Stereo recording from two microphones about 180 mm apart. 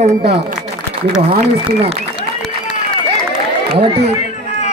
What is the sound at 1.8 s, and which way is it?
Applause, 30° right (ahead or behind).